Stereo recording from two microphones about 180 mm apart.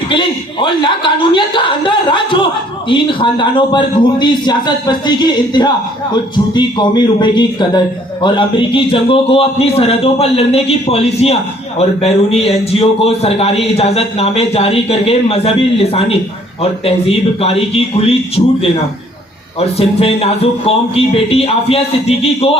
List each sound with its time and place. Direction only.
0.6 s a man's voice: 25° left (ahead or behind)